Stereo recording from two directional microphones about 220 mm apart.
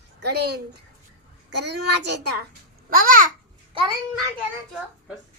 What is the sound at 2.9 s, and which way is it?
Speech, 40° right (ahead or behind).